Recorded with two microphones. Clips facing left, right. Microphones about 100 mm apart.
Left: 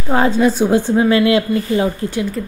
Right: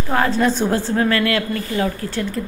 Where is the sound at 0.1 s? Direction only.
20° left (ahead or behind).